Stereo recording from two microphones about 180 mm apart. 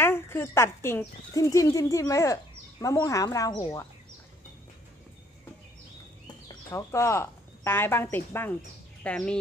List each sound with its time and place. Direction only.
0.0 s speech: 15° left (ahead or behind)
6.7 s speech: 15° left (ahead or behind)